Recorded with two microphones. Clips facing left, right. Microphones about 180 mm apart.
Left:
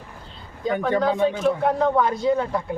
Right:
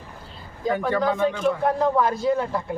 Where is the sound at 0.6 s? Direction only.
Centre (ahead or behind).